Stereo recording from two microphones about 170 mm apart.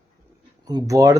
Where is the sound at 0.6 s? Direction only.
20° right (ahead or behind).